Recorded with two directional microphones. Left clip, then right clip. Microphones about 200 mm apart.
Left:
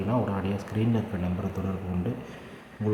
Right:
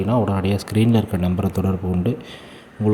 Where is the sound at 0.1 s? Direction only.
30° right (ahead or behind).